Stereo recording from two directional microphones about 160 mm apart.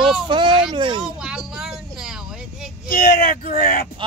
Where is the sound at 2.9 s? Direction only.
65° left (ahead or behind).